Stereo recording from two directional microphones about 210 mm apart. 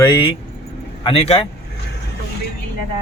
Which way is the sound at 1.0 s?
25° left (ahead or behind).